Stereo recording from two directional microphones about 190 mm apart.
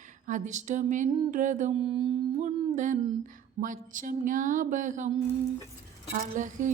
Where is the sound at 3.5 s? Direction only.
45° right (ahead or behind).